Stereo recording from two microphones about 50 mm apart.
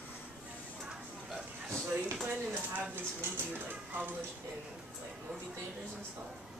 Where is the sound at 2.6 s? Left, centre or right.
Right.